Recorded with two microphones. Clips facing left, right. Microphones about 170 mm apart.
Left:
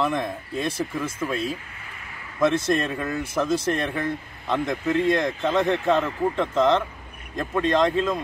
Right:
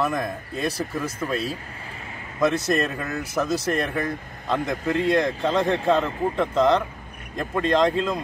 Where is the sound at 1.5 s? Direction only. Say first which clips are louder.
Even; 35° right (ahead or behind).